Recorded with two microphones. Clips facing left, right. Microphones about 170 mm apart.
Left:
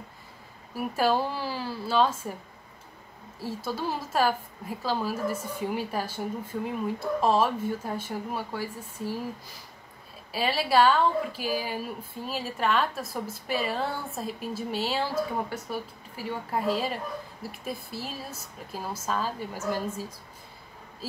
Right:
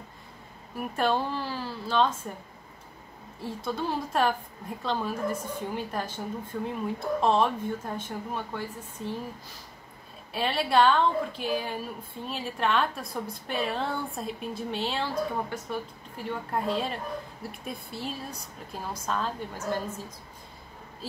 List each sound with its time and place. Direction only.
0.7 s speech: 5° left (ahead or behind)
3.3 s a woman's voice: 5° left (ahead or behind)
10.3 s a woman's voice: 5° left (ahead or behind)